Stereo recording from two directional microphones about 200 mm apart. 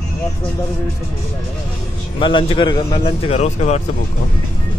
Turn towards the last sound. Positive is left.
turn(degrees=35)  # may be behind; listen again after turning